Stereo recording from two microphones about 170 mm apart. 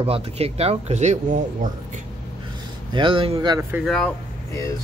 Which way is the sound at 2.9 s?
30° right (ahead or behind).